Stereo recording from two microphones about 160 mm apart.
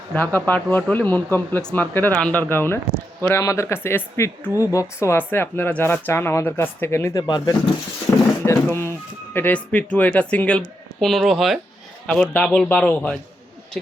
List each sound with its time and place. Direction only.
0.1 s a man's voice: 10° left (ahead or behind)